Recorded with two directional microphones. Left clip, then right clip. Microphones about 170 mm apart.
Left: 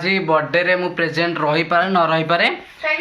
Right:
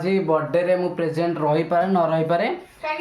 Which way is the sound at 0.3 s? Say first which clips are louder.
Left 4 dB; 15° right (ahead or behind).